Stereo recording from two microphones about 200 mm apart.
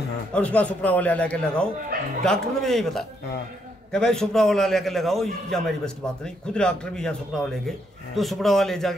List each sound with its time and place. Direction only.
0.3 s speech: 5° left (ahead or behind)
1.9 s speech: 45° right (ahead or behind)
2.2 s speech: centre (ahead or behind)